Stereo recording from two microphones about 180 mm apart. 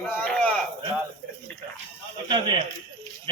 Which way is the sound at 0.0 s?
5° left (ahead or behind).